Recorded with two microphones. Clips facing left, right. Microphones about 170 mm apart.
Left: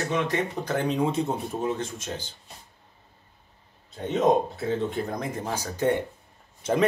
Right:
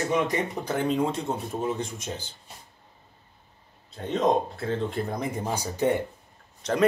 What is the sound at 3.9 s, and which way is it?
Speech, centre (ahead or behind).